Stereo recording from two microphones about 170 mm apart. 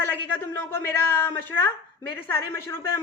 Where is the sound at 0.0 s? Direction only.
10° left (ahead or behind).